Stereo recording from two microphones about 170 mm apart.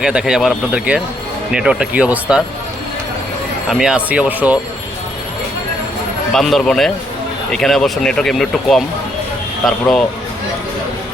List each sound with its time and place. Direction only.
0.0 s speech: 5° right (ahead or behind)
3.7 s speech: 5° right (ahead or behind)
6.3 s speech: centre (ahead or behind)